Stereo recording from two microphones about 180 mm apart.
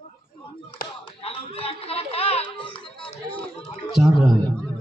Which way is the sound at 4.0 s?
Centre (ahead or behind).